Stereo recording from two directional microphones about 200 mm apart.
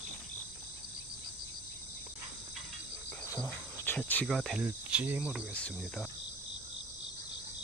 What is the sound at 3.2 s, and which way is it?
Cricket, 10° left (ahead or behind).